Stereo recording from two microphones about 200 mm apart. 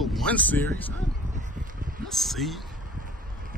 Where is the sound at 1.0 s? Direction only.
40° right (ahead or behind).